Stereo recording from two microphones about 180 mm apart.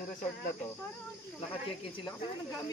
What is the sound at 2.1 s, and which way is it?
Speech, 20° left (ahead or behind).